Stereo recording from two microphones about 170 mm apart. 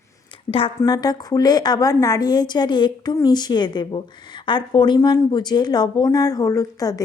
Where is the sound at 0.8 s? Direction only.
25° left (ahead or behind).